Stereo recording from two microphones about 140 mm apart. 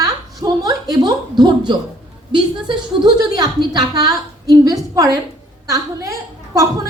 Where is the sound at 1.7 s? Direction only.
30° right (ahead or behind).